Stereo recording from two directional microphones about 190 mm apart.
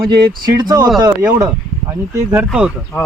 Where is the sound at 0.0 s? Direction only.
55° right (ahead or behind).